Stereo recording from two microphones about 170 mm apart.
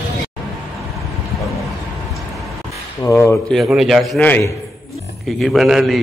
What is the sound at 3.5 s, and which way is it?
A man's voice, centre (ahead or behind).